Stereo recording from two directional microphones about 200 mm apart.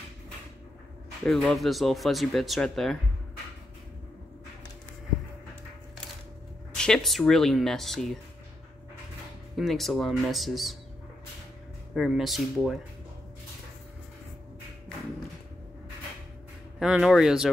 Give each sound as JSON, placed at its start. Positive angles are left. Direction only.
{"t": 1.2, "sound": "speech", "side_deg": 5}
{"t": 6.8, "sound": "speech", "side_deg": 5}
{"t": 9.6, "sound": "speech", "side_deg": 0}
{"t": 11.9, "sound": "speech", "side_deg": 0}
{"t": 16.8, "sound": "speech", "side_deg": -5}